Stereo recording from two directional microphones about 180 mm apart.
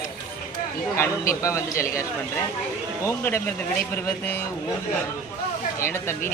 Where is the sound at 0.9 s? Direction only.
15° left (ahead or behind).